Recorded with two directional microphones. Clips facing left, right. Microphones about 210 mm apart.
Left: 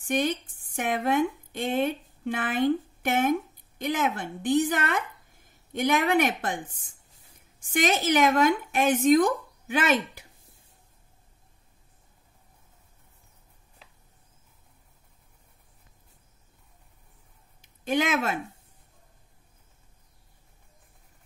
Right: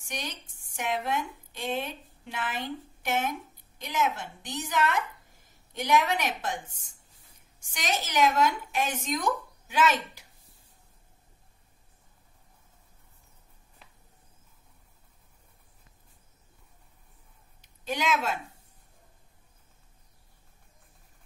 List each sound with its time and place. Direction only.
0.0 s a woman's voice: 55° left (ahead or behind)
17.8 s a woman's voice: 50° left (ahead or behind)